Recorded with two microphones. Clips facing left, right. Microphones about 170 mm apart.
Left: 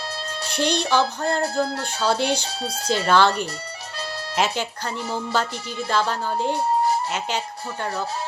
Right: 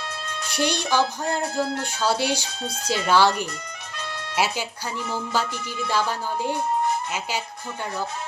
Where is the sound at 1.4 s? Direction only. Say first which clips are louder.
Left 2 dB; 35° left (ahead or behind).